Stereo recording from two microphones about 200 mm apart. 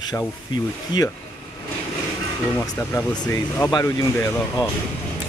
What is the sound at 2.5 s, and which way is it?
Speech, 15° left (ahead or behind).